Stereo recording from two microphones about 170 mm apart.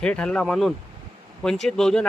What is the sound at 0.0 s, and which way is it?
Speech, 5° left (ahead or behind).